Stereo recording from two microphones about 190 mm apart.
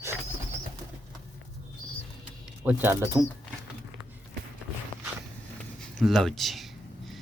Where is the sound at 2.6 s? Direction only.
10° right (ahead or behind).